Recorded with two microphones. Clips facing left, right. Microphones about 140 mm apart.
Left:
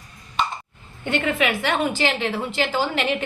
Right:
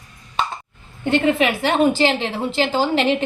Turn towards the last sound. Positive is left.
turn(degrees=-30)  # may be behind; listen again after turning